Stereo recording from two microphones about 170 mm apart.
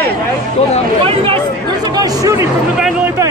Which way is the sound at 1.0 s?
30° right (ahead or behind).